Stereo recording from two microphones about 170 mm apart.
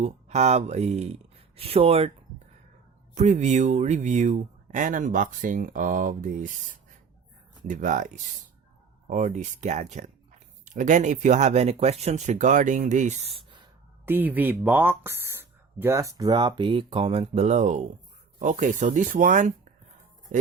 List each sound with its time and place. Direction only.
0.0 s speech: 40° right (ahead or behind)
3.2 s speech: 40° right (ahead or behind)
7.7 s speech: 50° right (ahead or behind)
14.0 s speech: 10° right (ahead or behind); by 19.5 s 50° right (ahead or behind)